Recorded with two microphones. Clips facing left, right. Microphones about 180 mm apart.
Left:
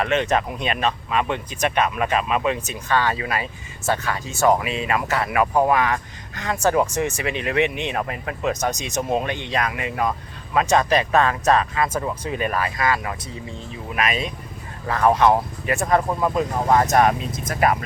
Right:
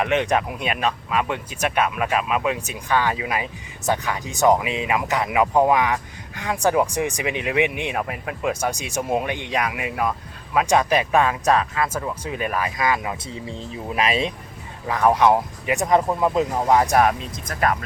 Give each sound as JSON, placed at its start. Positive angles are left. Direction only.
{"t": 0.0, "sound": "speech", "side_deg": -15}
{"t": 13.5, "sound": "speech", "side_deg": -30}
{"t": 14.8, "sound": "speech", "side_deg": -10}
{"t": 16.7, "sound": "speech", "side_deg": -10}
{"t": 17.5, "sound": "speech", "side_deg": 10}